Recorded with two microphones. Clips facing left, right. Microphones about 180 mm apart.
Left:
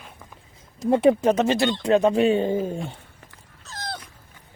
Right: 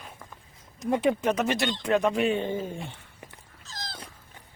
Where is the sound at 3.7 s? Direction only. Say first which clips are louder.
Left 7 dB; 65° left (ahead or behind).